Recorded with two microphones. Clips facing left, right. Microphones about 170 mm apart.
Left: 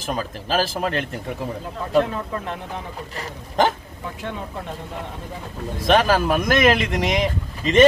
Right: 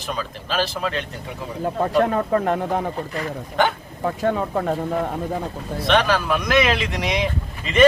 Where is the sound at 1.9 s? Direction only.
50° right (ahead or behind).